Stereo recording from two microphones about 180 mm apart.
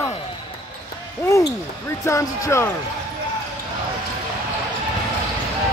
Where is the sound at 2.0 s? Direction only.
15° left (ahead or behind).